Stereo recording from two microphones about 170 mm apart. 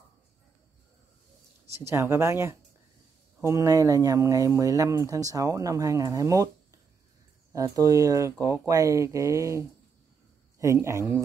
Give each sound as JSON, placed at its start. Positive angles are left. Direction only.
{"t": 1.8, "sound": "speech", "side_deg": -15}
{"t": 7.5, "sound": "speech", "side_deg": -20}